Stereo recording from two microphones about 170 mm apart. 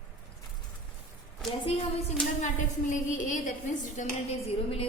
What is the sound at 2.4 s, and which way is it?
A woman's voice, 50° left (ahead or behind).